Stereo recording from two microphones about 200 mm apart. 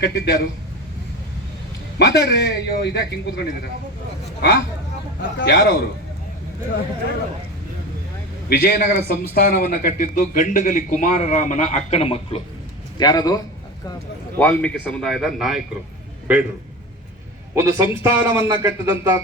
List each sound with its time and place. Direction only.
0.0 s a man's voice: 55° left (ahead or behind)
2.0 s a man's voice: 60° left (ahead or behind)
8.4 s a man's voice: 50° left (ahead or behind); by 13.4 s 20° left (ahead or behind)
14.3 s a man's voice: 5° left (ahead or behind); by 16.4 s 10° right (ahead or behind)
17.5 s a man's voice: 15° right (ahead or behind)